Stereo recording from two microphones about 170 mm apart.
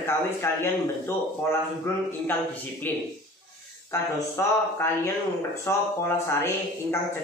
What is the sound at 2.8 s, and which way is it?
Speech, 10° left (ahead or behind).